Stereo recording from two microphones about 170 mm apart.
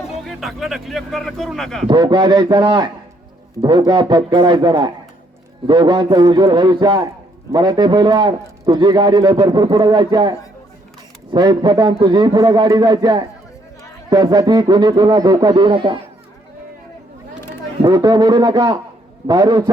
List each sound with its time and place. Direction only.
0.3 s speech: centre (ahead or behind)
1.9 s a man's voice: 25° right (ahead or behind)
17.8 s a man's voice: 25° right (ahead or behind)